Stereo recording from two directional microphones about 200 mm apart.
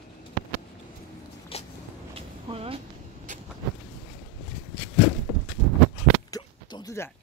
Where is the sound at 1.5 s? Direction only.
30° left (ahead or behind).